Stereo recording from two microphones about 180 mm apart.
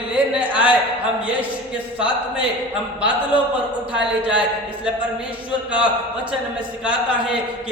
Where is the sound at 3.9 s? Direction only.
5° right (ahead or behind).